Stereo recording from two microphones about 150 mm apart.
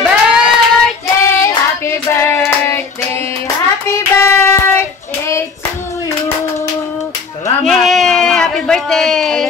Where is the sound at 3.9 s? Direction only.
15° left (ahead or behind).